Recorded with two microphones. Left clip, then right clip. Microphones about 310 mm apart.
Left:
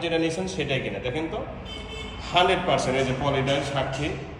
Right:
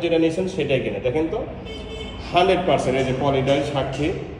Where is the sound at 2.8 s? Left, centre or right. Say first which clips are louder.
Right 4 dB; centre.